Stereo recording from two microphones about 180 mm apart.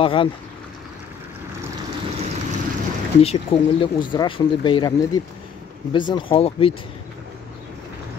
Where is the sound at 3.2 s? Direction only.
30° left (ahead or behind).